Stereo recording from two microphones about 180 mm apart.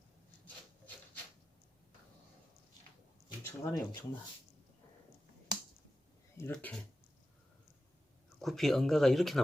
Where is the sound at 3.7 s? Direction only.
20° left (ahead or behind).